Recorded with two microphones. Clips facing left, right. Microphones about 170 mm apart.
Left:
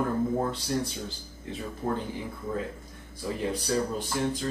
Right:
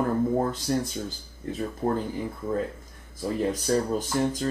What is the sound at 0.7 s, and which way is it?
Speech, 45° right (ahead or behind).